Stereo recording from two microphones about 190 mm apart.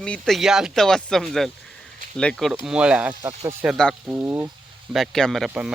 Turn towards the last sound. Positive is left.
turn(degrees=0)  # may be behind; listen again after turning